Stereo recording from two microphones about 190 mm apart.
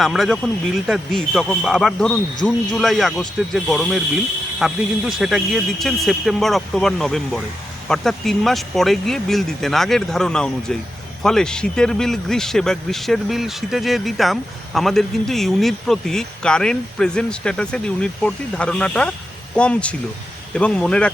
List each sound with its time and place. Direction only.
0.0 s speech: centre (ahead or behind)